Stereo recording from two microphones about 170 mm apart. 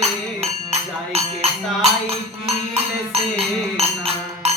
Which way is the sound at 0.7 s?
35° right (ahead or behind).